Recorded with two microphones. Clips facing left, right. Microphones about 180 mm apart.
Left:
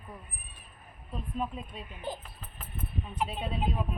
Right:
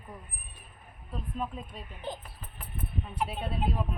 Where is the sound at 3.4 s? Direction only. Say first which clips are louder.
Even; 5° left (ahead or behind).